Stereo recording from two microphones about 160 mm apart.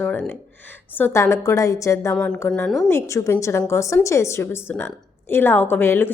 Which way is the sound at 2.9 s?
20° left (ahead or behind).